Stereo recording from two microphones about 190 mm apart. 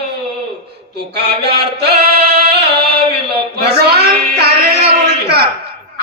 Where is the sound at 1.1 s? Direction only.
60° right (ahead or behind).